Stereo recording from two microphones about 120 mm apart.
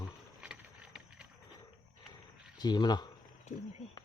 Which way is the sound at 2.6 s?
35° left (ahead or behind).